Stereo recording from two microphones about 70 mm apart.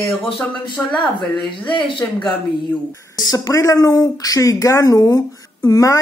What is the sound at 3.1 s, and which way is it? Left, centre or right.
Speech, left.